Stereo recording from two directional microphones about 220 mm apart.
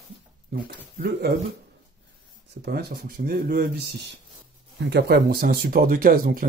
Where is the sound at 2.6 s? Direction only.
45° right (ahead or behind).